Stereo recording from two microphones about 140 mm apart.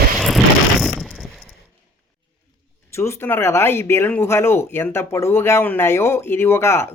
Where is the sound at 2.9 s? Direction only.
20° left (ahead or behind).